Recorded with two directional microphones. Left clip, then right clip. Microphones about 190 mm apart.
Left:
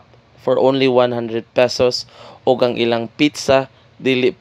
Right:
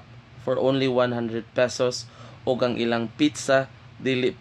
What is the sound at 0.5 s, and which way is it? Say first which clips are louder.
Speech: left 8 dB; 30° left (ahead or behind).